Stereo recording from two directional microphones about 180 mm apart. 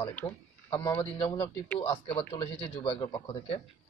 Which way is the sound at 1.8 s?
25° left (ahead or behind).